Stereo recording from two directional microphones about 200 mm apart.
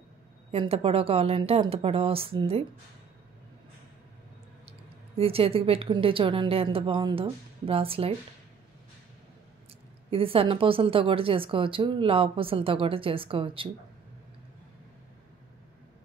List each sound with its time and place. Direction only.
0.5 s speech: 30° right (ahead or behind)
5.1 s speech: 30° right (ahead or behind)
10.1 s speech: 30° right (ahead or behind)